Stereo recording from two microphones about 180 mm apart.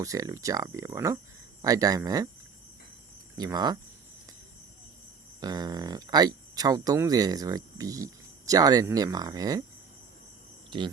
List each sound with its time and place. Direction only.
0.0 s speech: 20° right (ahead or behind)
3.3 s speech: 20° right (ahead or behind)
5.4 s speech: 20° right (ahead or behind)
10.7 s speech: 25° right (ahead or behind)